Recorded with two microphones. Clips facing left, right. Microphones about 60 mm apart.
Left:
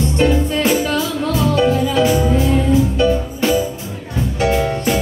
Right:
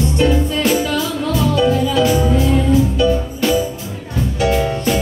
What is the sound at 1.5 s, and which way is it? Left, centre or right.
Music, left.